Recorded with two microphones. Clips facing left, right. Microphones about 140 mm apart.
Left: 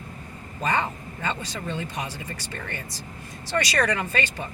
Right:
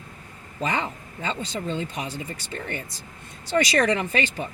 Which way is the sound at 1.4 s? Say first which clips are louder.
Right 3 dB; 25° right (ahead or behind).